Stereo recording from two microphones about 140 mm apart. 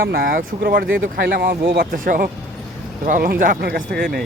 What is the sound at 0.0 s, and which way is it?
Speech, 90° right.